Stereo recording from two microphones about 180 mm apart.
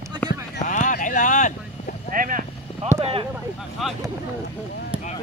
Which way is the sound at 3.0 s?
30° right (ahead or behind).